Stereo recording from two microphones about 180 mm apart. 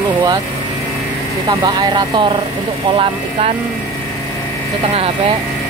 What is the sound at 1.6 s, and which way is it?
Speech, 25° right (ahead or behind).